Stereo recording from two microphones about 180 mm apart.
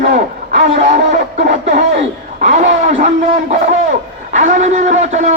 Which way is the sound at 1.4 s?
40° right (ahead or behind).